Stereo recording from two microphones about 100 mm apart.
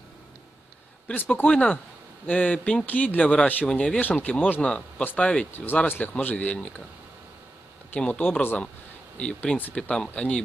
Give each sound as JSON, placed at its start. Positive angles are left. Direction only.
{"t": 1.0, "sound": "speech", "side_deg": 15}
{"t": 7.9, "sound": "speech", "side_deg": 15}